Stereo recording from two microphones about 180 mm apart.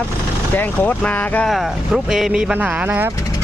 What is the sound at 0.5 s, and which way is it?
Speech, 10° left (ahead or behind).